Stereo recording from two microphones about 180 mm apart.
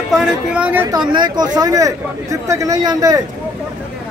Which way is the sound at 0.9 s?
25° right (ahead or behind).